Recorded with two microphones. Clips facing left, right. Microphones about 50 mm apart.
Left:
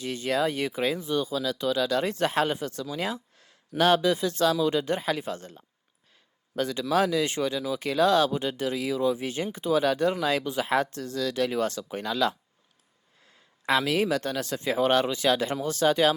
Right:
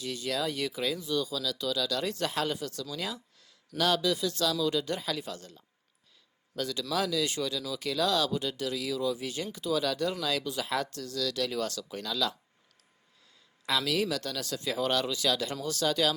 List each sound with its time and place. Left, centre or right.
0.0 s speech: left
13.7 s speech: left